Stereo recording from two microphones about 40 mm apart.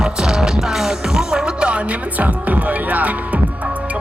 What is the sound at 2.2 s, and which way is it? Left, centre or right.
Music, right.